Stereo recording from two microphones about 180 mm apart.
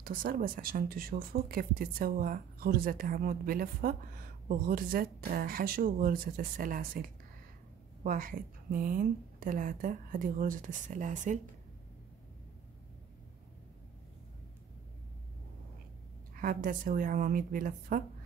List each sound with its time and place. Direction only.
0.0 s speech: 50° right (ahead or behind)
16.3 s speech: 50° right (ahead or behind)